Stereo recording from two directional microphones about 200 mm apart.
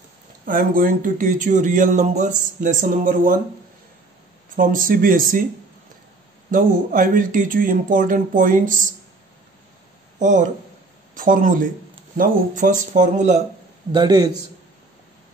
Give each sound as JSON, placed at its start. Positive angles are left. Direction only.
{"t": 0.5, "sound": "speech", "side_deg": -45}
{"t": 4.6, "sound": "speech", "side_deg": -45}
{"t": 6.5, "sound": "speech", "side_deg": -45}
{"t": 10.1, "sound": "speech", "side_deg": -40}
{"t": 13.9, "sound": "a man's voice", "side_deg": -20}